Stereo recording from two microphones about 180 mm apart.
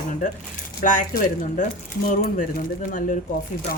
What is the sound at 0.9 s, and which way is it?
A woman's voice, 45° left (ahead or behind).